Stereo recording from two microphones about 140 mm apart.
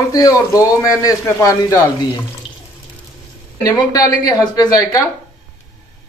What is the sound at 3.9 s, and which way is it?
A man's voice, 25° left (ahead or behind).